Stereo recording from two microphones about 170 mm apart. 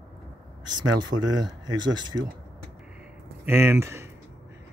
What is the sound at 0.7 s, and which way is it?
Speech, 25° right (ahead or behind).